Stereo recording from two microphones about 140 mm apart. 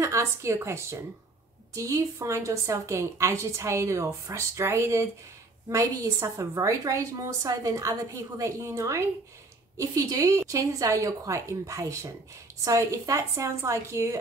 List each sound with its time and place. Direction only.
0.0 s a woman's voice: 20° right (ahead or behind)